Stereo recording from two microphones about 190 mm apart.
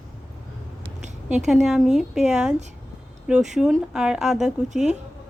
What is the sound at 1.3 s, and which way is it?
Speech, centre (ahead or behind).